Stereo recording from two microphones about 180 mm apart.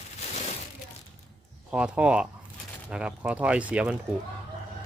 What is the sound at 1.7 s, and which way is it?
Speech, 5° right (ahead or behind).